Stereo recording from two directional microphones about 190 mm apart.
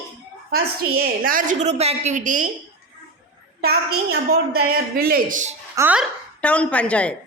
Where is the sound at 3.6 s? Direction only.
55° right (ahead or behind).